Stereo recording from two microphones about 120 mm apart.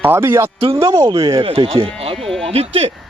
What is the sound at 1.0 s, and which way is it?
Speech, 30° right (ahead or behind).